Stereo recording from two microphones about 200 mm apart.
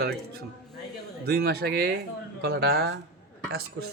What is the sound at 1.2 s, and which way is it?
Speech, 50° right (ahead or behind).